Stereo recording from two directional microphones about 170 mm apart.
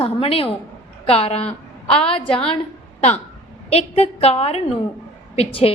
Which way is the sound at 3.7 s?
35° left (ahead or behind).